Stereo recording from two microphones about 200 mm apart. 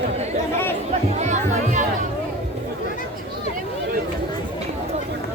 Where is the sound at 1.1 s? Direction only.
35° right (ahead or behind).